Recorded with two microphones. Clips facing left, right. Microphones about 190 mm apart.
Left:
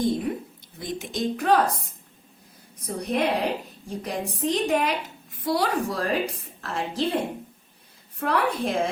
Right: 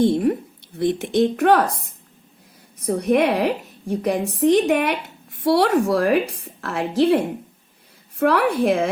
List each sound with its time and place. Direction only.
0.0 s a sound: 65° right (ahead or behind)
0.8 s a woman's voice: 65° right (ahead or behind)
8.2 s a woman's voice: 70° right (ahead or behind)